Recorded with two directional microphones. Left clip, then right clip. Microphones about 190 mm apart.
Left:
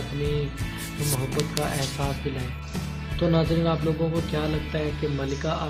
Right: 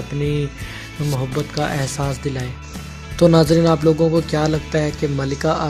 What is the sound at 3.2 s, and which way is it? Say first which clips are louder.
Speech: right 11 dB; 55° right (ahead or behind).